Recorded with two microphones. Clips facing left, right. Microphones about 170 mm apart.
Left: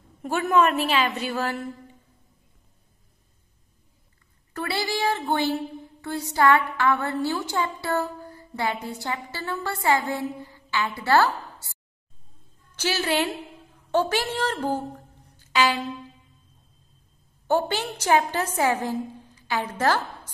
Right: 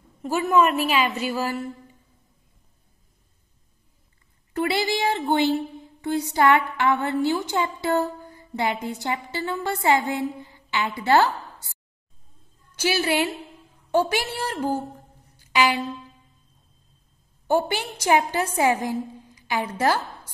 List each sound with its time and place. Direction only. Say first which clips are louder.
0.2 s a woman's voice: right 1 dB; centre (ahead or behind)
4.6 s a woman's voice: right 4 dB; 20° right (ahead or behind)
12.7 s a woman's voice: right 2 dB; 10° right (ahead or behind)
15.3 s music: right 1 dB; 10° right (ahead or behind)
17.5 s a woman's voice: right 1 dB; 10° right (ahead or behind)